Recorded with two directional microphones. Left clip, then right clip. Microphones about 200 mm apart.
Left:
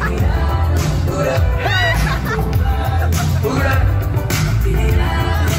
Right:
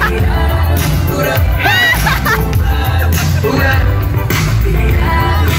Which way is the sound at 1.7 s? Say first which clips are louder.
Right 7 dB; 35° right (ahead or behind).